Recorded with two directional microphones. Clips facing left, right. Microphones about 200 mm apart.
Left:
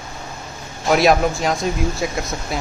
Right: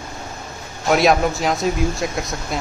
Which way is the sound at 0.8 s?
Centre (ahead or behind).